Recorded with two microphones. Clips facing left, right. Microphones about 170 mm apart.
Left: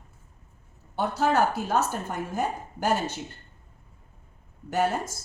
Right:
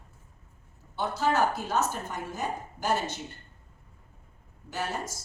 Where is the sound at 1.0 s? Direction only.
60° left (ahead or behind).